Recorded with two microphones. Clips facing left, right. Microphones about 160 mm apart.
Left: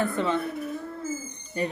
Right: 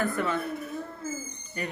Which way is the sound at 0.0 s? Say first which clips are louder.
Left 2 dB; 25° left (ahead or behind).